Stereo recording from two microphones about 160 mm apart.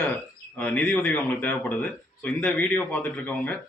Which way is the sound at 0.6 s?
10° left (ahead or behind).